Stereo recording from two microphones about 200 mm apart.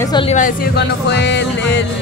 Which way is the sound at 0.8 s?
60° left (ahead or behind).